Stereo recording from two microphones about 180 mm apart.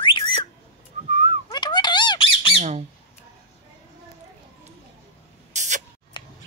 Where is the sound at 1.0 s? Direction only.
40° right (ahead or behind).